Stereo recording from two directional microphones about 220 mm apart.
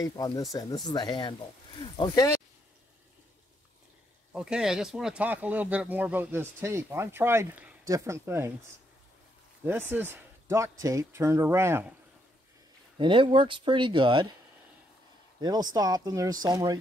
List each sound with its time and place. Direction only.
0.0 s speech: 15° left (ahead or behind)
4.3 s speech: 5° right (ahead or behind)
9.7 s speech: 10° right (ahead or behind)
12.9 s speech: 20° right (ahead or behind)
15.4 s speech: 20° right (ahead or behind)